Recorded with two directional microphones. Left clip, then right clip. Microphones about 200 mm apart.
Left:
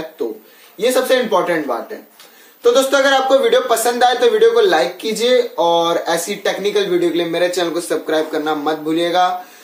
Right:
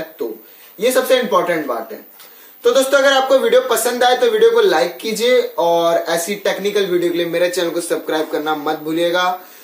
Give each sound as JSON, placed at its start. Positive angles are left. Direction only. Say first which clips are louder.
{"t": 0.7, "sound": "a man's voice", "louder": "even", "side_deg": 5}
{"t": 2.6, "sound": "a man's voice", "louder": "even", "side_deg": 0}